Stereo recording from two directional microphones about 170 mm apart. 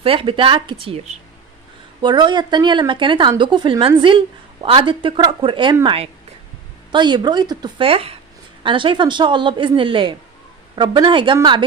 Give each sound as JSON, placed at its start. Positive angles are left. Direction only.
{"t": 0.0, "sound": "a woman's voice", "side_deg": -30}
{"t": 6.9, "sound": "speech", "side_deg": -25}